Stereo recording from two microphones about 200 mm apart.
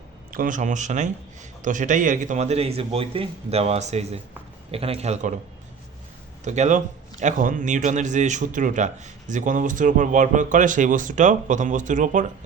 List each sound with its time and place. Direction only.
0.3 s a man's voice: 40° right (ahead or behind)
6.4 s a man's voice: 35° right (ahead or behind)